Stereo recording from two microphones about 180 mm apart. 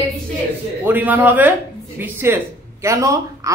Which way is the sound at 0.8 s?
10° right (ahead or behind).